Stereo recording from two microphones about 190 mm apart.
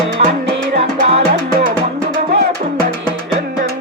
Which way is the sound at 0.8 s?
35° right (ahead or behind).